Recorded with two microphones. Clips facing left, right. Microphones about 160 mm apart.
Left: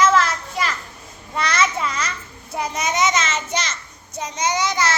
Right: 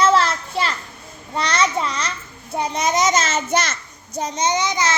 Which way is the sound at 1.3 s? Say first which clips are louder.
Right 1 dB; 30° right (ahead or behind).